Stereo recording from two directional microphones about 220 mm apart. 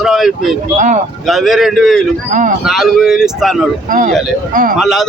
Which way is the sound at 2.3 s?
35° right (ahead or behind).